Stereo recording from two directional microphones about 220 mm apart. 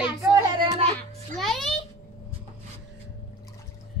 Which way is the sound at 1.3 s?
Centre (ahead or behind).